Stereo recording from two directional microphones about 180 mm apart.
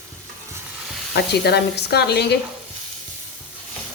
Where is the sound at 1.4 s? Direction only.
65° left (ahead or behind).